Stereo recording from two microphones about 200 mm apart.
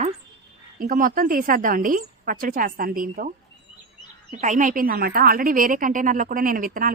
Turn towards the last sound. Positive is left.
turn(degrees=-45)  # may be behind; listen again after turning